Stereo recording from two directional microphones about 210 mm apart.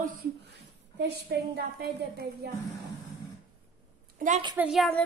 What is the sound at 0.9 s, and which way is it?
A woman's voice, 50° right (ahead or behind).